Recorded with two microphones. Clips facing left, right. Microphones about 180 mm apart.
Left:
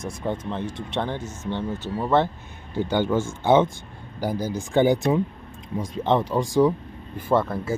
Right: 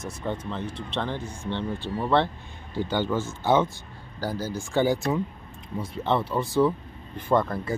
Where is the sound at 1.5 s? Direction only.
15° left (ahead or behind).